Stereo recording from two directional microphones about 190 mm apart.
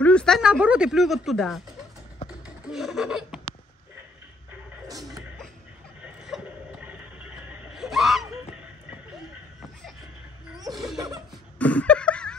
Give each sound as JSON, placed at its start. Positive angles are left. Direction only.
{"t": 0.0, "sound": "speech", "side_deg": 5}
{"t": 2.6, "sound": "laughter", "side_deg": 0}
{"t": 6.0, "sound": "vehicle", "side_deg": -5}
{"t": 7.4, "sound": "screaming", "side_deg": 0}
{"t": 10.7, "sound": "laughter", "side_deg": 0}
{"t": 11.0, "sound": "laughter", "side_deg": -20}
{"t": 11.5, "sound": "a sound", "side_deg": 5}